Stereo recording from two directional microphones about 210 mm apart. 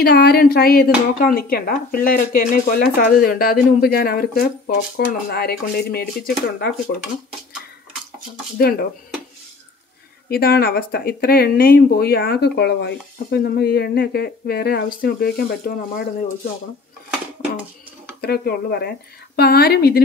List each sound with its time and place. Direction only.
0.0 s speech: 45° left (ahead or behind)
8.5 s speech: 45° left (ahead or behind)
10.3 s speech: 45° left (ahead or behind)
18.2 s speech: 50° left (ahead or behind)